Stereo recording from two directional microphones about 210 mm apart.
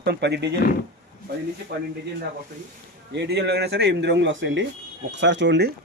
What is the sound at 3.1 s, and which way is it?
Speech, 55° right (ahead or behind).